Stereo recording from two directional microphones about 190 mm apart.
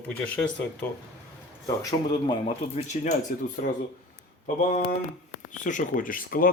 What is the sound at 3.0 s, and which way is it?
Speech, 40° left (ahead or behind).